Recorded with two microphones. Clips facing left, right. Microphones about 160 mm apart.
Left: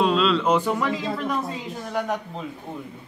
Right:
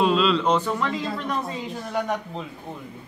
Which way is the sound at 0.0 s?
Centre (ahead or behind).